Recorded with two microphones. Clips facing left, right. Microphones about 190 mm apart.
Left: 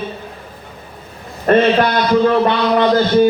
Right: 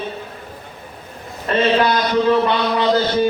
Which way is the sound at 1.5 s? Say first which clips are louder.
Left 4 dB; 55° left (ahead or behind).